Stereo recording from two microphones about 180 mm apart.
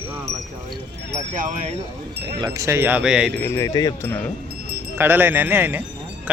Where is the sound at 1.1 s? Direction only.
40° right (ahead or behind).